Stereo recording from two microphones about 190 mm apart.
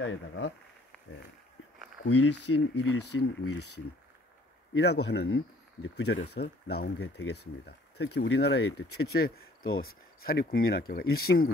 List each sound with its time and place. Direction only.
2.0 s a sound: 90° left
2.5 s speech: 90° left
2.8 s speech: 65° left (ahead or behind)
4.7 s speech: 60° left (ahead or behind); by 6.1 s 75° left (ahead or behind)
6.1 s speech: 55° left (ahead or behind)